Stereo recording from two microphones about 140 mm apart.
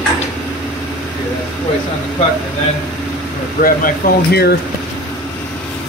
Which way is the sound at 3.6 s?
90° left.